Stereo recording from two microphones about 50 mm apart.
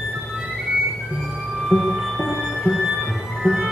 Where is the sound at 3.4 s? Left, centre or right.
Centre.